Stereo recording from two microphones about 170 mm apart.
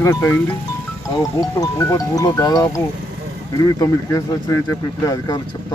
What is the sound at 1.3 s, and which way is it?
Speech, 20° left (ahead or behind).